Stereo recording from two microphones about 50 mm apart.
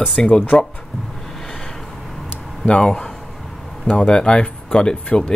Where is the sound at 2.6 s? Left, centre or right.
Left.